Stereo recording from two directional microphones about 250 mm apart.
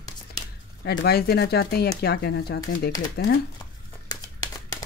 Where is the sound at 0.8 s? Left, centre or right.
Left.